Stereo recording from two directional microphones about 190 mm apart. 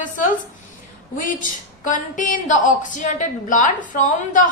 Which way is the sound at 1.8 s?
40° left (ahead or behind).